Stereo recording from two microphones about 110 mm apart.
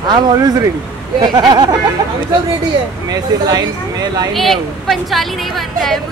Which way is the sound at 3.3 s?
35° right (ahead or behind).